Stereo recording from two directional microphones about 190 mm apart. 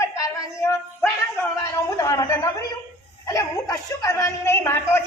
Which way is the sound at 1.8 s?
15° left (ahead or behind).